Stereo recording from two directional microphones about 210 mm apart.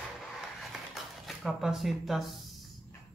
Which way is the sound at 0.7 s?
Centre (ahead or behind).